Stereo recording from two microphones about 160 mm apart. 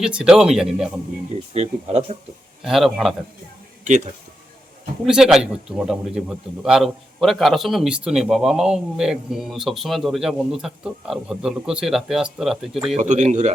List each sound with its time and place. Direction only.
0.0 s a man's voice: 5° right (ahead or behind)
1.5 s speech: 45° right (ahead or behind)
2.6 s a man's voice: centre (ahead or behind)
5.0 s a man's voice: 5° right (ahead or behind)
13.0 s speech: 50° right (ahead or behind)